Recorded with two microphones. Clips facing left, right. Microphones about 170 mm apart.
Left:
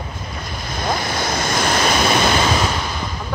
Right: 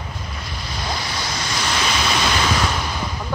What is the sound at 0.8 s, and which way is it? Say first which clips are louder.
Waves: left 6 dB; 50° left (ahead or behind).